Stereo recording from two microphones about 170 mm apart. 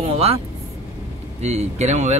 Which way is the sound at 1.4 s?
40° right (ahead or behind).